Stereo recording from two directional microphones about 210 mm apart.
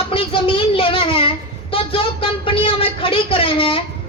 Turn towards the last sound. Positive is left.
turn(degrees=25)  # may be behind; listen again after turning